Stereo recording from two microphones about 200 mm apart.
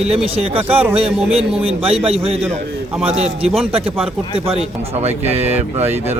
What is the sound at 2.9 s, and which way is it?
Speech, 5° right (ahead or behind).